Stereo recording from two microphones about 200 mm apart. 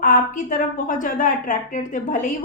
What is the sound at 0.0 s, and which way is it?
A woman's voice, 45° left (ahead or behind).